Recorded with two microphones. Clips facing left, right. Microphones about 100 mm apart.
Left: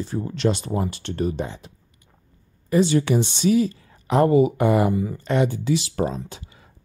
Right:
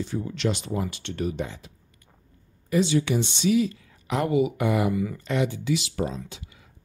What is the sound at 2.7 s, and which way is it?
Speech, 40° left (ahead or behind).